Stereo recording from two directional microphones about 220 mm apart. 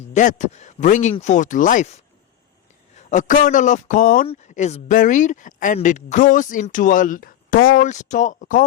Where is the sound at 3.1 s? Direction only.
35° left (ahead or behind).